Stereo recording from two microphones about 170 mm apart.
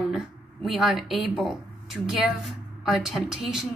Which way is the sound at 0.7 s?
Centre (ahead or behind).